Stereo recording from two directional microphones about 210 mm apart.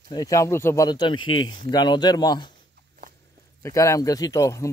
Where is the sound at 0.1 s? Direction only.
15° left (ahead or behind).